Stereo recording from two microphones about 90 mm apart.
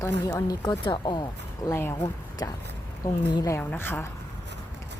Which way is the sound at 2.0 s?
45° left (ahead or behind).